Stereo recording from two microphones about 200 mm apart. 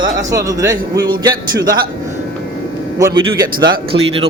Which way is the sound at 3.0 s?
20° right (ahead or behind).